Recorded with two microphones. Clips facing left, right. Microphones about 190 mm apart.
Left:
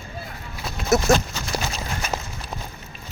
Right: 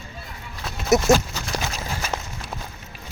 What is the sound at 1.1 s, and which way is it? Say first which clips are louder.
Speech: right 2 dB; 20° right (ahead or behind).